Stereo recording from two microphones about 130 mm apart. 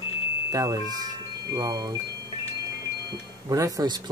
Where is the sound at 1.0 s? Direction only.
30° right (ahead or behind).